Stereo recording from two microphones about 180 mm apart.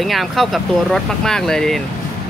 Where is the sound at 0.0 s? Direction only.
Centre (ahead or behind).